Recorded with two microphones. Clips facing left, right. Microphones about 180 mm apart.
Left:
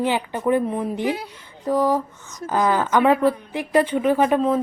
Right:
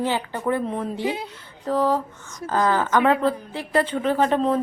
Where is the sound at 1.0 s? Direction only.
20° right (ahead or behind).